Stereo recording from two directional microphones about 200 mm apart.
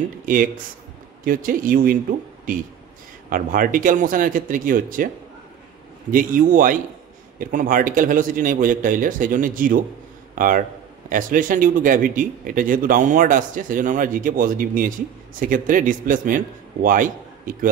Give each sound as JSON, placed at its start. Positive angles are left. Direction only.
{"t": 0.2, "sound": "speech", "side_deg": -40}
{"t": 6.1, "sound": "a man's voice", "side_deg": -40}